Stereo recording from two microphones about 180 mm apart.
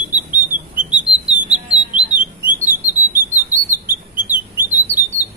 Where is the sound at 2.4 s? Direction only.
10° right (ahead or behind).